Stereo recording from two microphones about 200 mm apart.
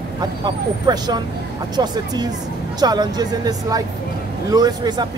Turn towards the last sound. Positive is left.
turn(degrees=-20)  # may be behind; listen again after turning